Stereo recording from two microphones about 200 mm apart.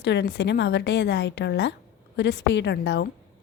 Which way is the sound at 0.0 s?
60° left (ahead or behind).